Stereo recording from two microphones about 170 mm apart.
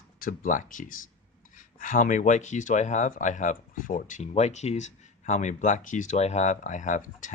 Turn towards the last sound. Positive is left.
turn(degrees=50)  # may be behind; listen again after turning